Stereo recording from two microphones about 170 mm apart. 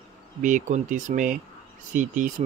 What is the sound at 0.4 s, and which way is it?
Speech, 50° right (ahead or behind).